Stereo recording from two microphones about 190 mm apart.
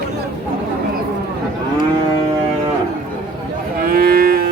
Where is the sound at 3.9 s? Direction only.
50° right (ahead or behind).